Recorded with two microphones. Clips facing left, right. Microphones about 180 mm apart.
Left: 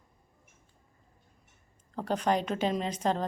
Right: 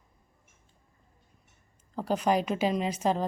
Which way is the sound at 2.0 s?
10° right (ahead or behind).